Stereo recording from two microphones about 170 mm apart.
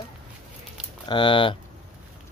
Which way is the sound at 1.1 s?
30° left (ahead or behind).